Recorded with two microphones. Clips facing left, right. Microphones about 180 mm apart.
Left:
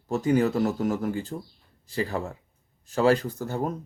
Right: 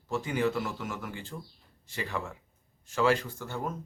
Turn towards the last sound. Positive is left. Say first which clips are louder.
# left 6 dB
turn(degrees=40)  # may be behind; listen again after turning